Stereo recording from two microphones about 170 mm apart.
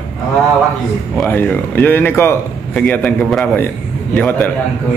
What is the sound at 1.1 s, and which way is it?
Speech, 10° left (ahead or behind).